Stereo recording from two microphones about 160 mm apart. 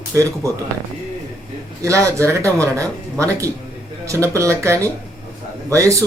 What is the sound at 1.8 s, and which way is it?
Speech, 20° right (ahead or behind).